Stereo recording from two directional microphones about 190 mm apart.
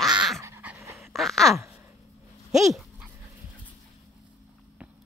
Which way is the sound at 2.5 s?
Centre (ahead or behind).